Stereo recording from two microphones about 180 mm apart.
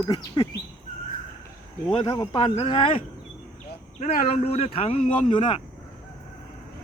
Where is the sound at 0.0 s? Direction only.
20° left (ahead or behind).